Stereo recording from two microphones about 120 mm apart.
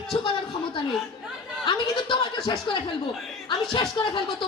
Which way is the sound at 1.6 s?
40° left (ahead or behind).